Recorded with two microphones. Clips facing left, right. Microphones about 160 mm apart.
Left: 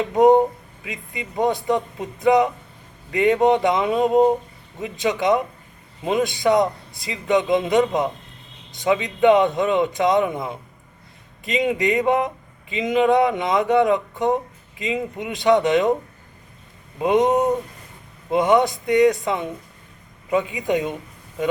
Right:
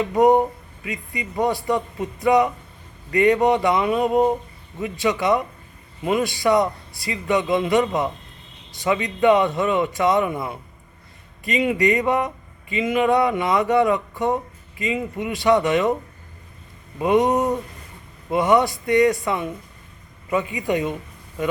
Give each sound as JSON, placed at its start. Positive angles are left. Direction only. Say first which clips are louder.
{"t": 0.0, "sound": "a man's voice", "louder": "left 2 dB", "side_deg": 20}
{"t": 17.0, "sound": "a man's voice", "louder": "left 1 dB", "side_deg": 20}